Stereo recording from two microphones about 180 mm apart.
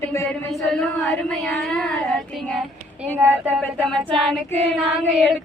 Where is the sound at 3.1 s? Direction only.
10° right (ahead or behind).